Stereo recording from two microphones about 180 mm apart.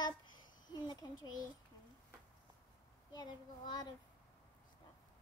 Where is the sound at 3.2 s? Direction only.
20° left (ahead or behind).